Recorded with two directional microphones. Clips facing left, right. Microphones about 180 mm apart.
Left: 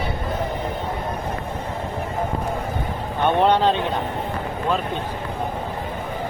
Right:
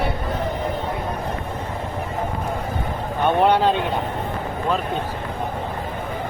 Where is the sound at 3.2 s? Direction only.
10° right (ahead or behind).